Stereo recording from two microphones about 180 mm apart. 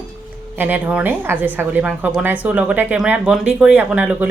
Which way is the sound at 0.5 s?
10° right (ahead or behind).